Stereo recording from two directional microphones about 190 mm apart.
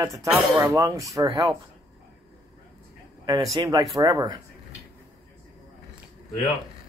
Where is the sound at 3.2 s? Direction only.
20° right (ahead or behind).